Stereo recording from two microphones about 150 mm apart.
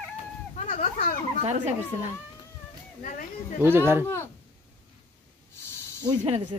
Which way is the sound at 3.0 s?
60° left (ahead or behind).